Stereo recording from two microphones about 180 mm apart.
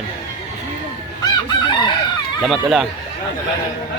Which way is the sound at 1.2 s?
25° left (ahead or behind).